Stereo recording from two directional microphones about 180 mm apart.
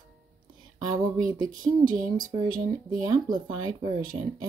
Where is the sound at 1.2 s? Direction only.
20° right (ahead or behind).